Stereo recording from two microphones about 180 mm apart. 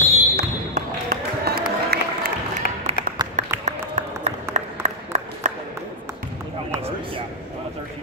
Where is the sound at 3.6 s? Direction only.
40° right (ahead or behind).